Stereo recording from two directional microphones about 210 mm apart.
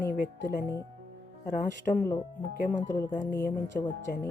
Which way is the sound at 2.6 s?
40° left (ahead or behind).